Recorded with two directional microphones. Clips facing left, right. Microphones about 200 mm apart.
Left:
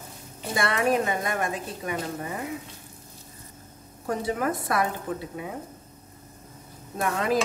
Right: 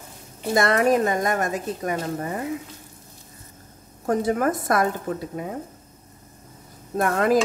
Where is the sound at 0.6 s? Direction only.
40° right (ahead or behind).